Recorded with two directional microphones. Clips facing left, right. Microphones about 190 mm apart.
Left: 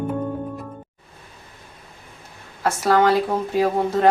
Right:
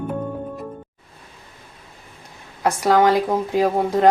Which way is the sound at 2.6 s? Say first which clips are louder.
Right 1 dB; 15° right (ahead or behind).